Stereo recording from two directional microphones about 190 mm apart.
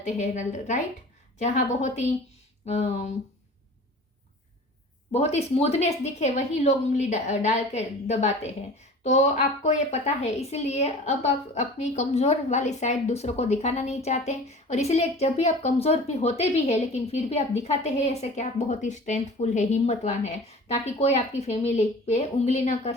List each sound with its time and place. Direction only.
0.0 s a woman's voice: 40° left (ahead or behind)
5.1 s a woman's voice: 35° left (ahead or behind)